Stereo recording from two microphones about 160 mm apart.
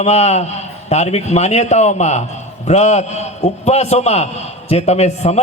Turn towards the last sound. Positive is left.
turn(degrees=40)  # may be behind; listen again after turning